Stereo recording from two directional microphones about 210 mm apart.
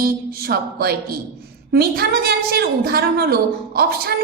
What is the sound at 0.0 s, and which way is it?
A woman's voice, 45° right (ahead or behind).